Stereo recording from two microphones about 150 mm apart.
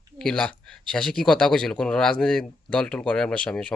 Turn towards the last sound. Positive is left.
turn(degrees=5)  # may be behind; listen again after turning